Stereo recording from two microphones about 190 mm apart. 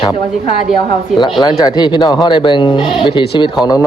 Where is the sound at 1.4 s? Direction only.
20° left (ahead or behind).